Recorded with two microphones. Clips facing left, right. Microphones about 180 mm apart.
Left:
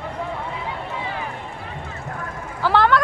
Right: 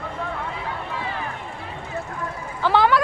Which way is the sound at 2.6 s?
Centre (ahead or behind).